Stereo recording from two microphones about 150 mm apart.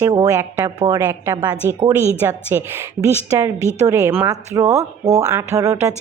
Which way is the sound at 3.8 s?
20° right (ahead or behind).